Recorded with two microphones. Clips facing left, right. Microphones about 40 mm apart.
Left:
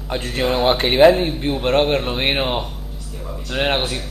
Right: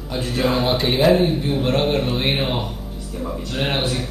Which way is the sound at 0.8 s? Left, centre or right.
Left.